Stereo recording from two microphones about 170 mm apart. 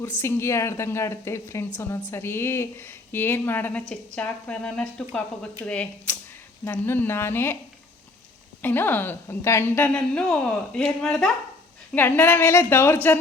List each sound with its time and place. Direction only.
0.2 s speech: 15° left (ahead or behind)
8.6 s speech: 10° left (ahead or behind)